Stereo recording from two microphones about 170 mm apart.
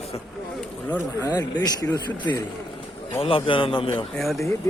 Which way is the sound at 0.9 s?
20° left (ahead or behind).